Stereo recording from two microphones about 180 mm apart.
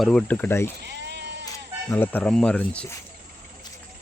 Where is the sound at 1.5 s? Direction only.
10° left (ahead or behind).